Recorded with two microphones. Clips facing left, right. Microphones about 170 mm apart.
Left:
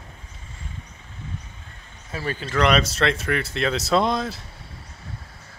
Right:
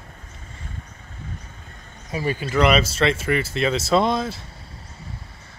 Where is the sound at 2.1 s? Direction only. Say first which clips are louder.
Right 4 dB; 15° right (ahead or behind).